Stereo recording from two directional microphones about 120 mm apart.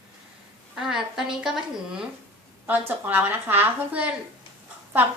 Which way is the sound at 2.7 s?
15° right (ahead or behind).